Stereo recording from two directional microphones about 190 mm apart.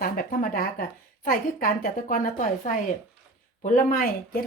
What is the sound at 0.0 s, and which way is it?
A woman's voice, 50° left (ahead or behind).